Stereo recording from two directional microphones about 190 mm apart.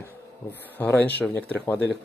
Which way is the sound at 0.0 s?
10° left (ahead or behind).